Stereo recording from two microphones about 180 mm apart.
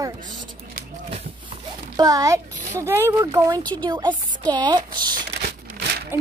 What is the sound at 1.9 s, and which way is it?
A woman's voice, 20° right (ahead or behind).